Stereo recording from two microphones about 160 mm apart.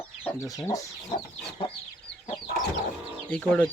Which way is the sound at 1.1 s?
35° left (ahead or behind).